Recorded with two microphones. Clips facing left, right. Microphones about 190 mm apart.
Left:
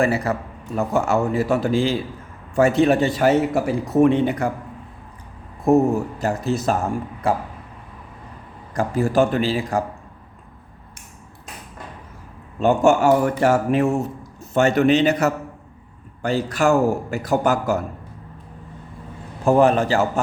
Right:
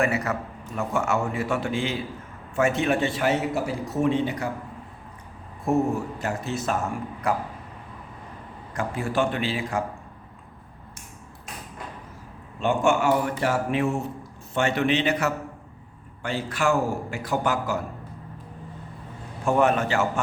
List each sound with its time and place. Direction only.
0.0 s a man's voice: 30° left (ahead or behind)
3.5 s speech: 60° left (ahead or behind)
6.1 s a man's voice: 35° left (ahead or behind)
8.7 s a man's voice: 40° left (ahead or behind)
12.5 s a man's voice: 40° left (ahead or behind)
19.5 s a man's voice: 35° left (ahead or behind)